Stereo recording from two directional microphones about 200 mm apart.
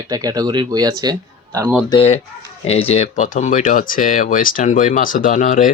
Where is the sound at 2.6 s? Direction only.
30° left (ahead or behind).